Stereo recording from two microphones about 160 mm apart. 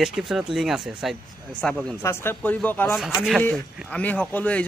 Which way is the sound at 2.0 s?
15° left (ahead or behind).